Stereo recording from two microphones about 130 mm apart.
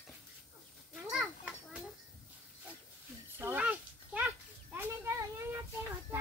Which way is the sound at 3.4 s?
15° right (ahead or behind).